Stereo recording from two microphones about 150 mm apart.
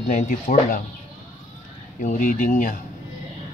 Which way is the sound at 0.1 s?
60° left (ahead or behind).